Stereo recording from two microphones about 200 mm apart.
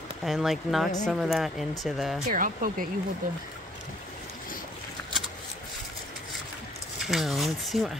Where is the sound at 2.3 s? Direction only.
45° right (ahead or behind).